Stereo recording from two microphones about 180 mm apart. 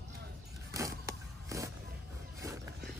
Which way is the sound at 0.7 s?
15° right (ahead or behind).